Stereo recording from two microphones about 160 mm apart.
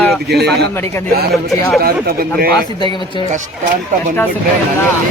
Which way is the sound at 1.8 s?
70° right (ahead or behind).